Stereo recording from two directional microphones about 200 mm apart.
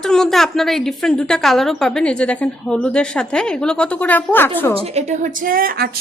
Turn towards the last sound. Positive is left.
turn(degrees=-45)  # may be behind; listen again after turning